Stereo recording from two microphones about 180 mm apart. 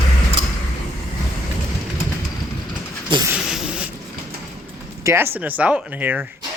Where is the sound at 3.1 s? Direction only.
25° right (ahead or behind).